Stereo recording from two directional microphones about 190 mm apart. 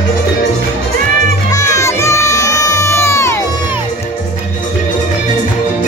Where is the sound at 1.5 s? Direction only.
15° left (ahead or behind).